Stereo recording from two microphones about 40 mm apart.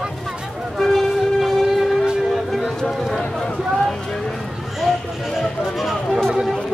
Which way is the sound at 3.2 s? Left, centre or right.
Left.